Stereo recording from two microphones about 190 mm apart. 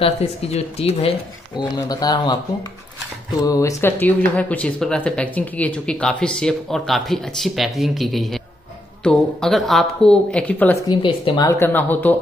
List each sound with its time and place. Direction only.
0.0 s speech: 35° left (ahead or behind)
1.6 s speech: 20° left (ahead or behind)
3.4 s speech: 15° left (ahead or behind)
10.9 s speech: 25° left (ahead or behind)
11.4 s speech: 10° left (ahead or behind)